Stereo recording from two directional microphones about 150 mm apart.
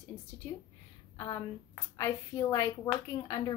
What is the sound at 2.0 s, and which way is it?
Speech, 20° left (ahead or behind).